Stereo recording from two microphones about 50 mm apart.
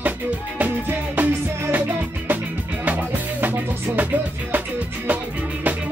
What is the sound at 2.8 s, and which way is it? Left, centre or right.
Music, right.